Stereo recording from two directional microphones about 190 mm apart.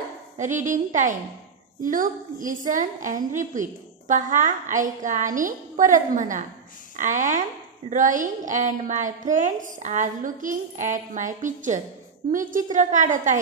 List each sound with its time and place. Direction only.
0.4 s a woman's voice: 40° right (ahead or behind)